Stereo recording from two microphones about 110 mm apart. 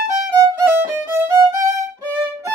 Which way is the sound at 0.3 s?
20° right (ahead or behind).